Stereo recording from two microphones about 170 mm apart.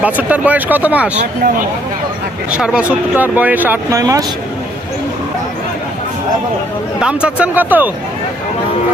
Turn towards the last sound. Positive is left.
turn(degrees=-10)  # may be behind; listen again after turning